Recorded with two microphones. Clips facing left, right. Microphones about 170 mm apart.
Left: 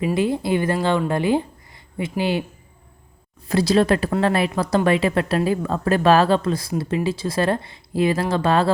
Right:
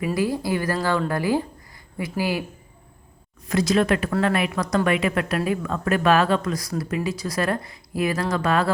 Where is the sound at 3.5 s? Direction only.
30° left (ahead or behind).